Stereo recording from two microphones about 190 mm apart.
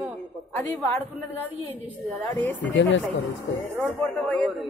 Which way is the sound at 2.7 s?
75° left (ahead or behind).